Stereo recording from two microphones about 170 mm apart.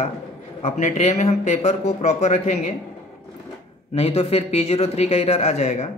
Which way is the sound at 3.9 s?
35° left (ahead or behind).